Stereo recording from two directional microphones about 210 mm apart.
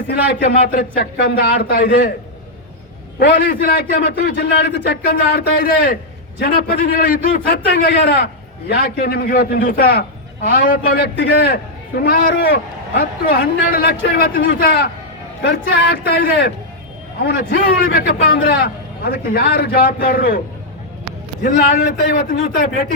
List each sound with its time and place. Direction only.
0.1 s a man's voice: 50° left (ahead or behind)
3.2 s a man's voice: 50° left (ahead or behind)
13.7 s a man's voice: 45° left (ahead or behind)
21.4 s a man's voice: 40° left (ahead or behind)